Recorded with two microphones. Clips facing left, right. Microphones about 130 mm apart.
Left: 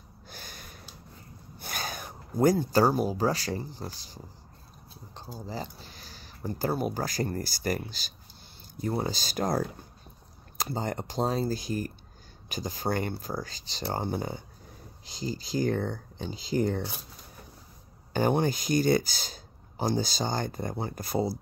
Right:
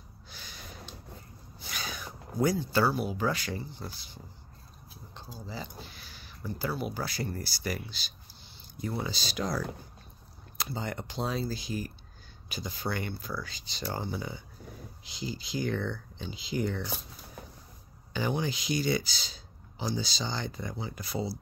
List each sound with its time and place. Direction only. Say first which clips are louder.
0.3 s snort: left 3 dB; 50° left (ahead or behind)
1.6 s speech: left 3 dB; 50° left (ahead or behind)
18.1 s speech: left 6 dB; 50° left (ahead or behind)